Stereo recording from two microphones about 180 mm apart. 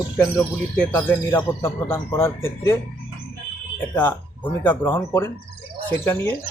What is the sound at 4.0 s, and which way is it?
Speech, 10° left (ahead or behind).